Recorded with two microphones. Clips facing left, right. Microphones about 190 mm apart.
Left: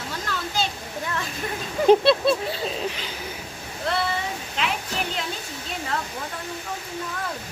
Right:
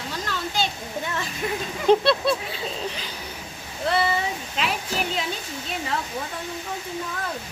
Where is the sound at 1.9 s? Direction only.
15° left (ahead or behind).